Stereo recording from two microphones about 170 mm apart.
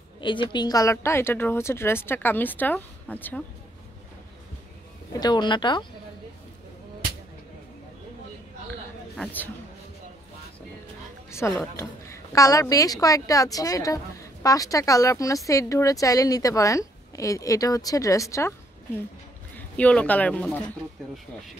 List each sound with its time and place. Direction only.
0.2 s a woman's voice: 30° left (ahead or behind); by 3.4 s 10° left (ahead or behind)
5.2 s a woman's voice: 25° left (ahead or behind)
9.1 s speech: 10° left (ahead or behind)
11.2 s a woman's voice: 15° left (ahead or behind)
19.5 s speech: 10° left (ahead or behind)